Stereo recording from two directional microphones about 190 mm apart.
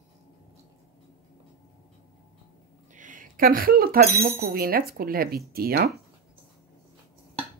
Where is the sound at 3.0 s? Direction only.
45° right (ahead or behind).